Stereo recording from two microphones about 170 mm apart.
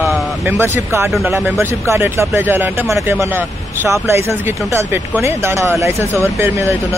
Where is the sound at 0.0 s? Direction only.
10° right (ahead or behind).